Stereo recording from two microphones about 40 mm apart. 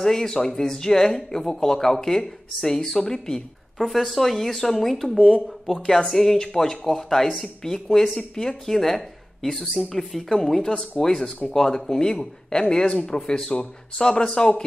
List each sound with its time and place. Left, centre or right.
0.0 s speech: centre
3.7 s a woman's voice: centre